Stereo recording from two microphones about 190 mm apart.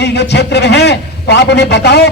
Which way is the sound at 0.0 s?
60° left (ahead or behind).